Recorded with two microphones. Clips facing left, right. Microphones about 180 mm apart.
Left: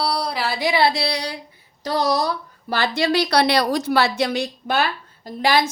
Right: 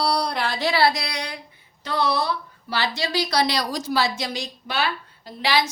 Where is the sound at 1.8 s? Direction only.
40° left (ahead or behind).